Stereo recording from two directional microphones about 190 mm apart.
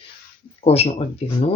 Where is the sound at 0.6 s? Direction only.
35° left (ahead or behind).